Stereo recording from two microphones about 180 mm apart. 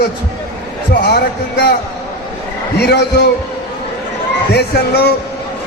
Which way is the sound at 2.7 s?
70° left (ahead or behind).